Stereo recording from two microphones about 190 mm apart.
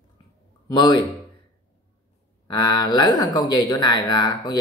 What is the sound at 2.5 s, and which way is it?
A man's voice, 20° left (ahead or behind).